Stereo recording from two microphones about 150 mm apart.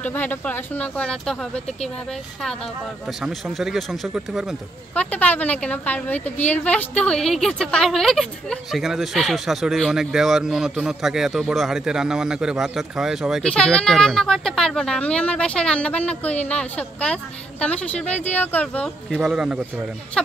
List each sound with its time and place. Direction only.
0.0 s speech: 10° left (ahead or behind)
3.1 s a woman's voice: centre (ahead or behind)
4.9 s a woman's voice: 10° left (ahead or behind)
19.1 s speech: 5° right (ahead or behind)